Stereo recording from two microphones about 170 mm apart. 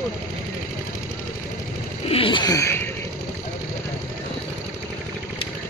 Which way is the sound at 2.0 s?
30° left (ahead or behind).